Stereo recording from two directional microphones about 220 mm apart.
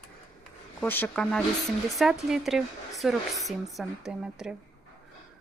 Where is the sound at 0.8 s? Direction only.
10° left (ahead or behind).